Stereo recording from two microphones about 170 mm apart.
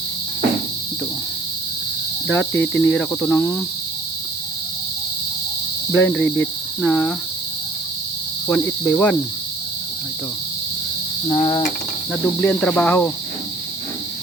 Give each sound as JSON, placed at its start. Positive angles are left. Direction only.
{"t": 2.2, "sound": "cricket", "side_deg": 10}
{"t": 5.9, "sound": "cricket", "side_deg": 10}
{"t": 6.4, "sound": "speech", "side_deg": 10}
{"t": 8.4, "sound": "cricket", "side_deg": 10}
{"t": 11.3, "sound": "cricket", "side_deg": 25}
{"t": 12.1, "sound": "cricket", "side_deg": 10}